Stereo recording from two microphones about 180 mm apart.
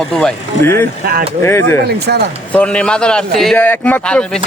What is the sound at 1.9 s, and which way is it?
Speech, 60° right (ahead or behind).